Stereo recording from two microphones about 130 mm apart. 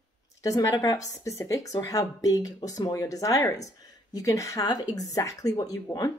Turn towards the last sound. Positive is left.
turn(degrees=25)  # may be behind; listen again after turning